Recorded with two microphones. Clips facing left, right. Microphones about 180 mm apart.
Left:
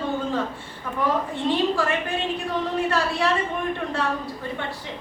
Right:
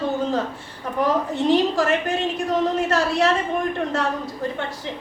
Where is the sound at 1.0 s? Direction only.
40° right (ahead or behind).